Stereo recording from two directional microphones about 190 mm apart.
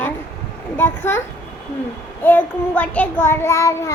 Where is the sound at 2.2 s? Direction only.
10° left (ahead or behind).